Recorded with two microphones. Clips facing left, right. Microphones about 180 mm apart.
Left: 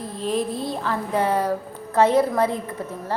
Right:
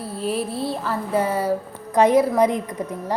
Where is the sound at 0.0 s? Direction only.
10° right (ahead or behind).